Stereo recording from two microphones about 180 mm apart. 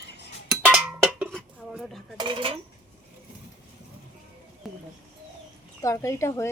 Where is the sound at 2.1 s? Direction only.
25° right (ahead or behind).